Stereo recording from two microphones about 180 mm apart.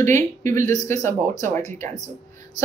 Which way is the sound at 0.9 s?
40° right (ahead or behind).